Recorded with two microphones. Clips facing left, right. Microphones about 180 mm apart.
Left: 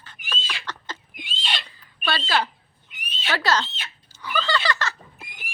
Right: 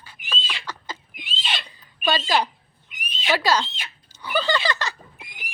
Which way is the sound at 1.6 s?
15° right (ahead or behind).